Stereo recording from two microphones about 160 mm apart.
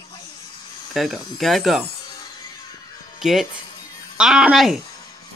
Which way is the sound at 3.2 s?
Centre (ahead or behind).